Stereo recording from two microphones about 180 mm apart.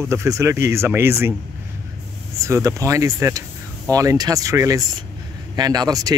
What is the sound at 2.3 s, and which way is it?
Speech, 15° right (ahead or behind).